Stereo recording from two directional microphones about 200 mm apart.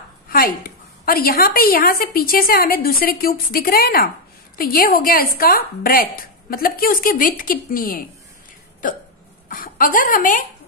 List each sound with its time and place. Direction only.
0.3 s a woman's voice: 45° left (ahead or behind)
8.8 s hiccup: 40° left (ahead or behind)
9.5 s a woman's voice: 45° left (ahead or behind)